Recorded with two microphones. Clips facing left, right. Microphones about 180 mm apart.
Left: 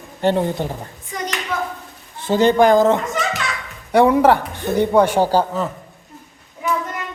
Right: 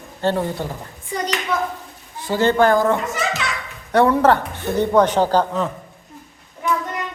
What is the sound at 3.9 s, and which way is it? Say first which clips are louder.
Speech: left 2 dB; 10° left (ahead or behind).